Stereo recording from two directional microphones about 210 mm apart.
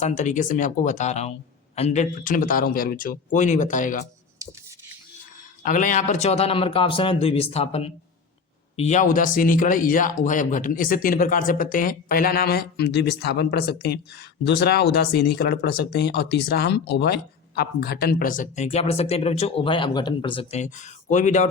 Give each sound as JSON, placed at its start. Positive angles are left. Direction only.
{"t": 0.0, "sound": "speech", "side_deg": 35}
{"t": 5.6, "sound": "a man's voice", "side_deg": 40}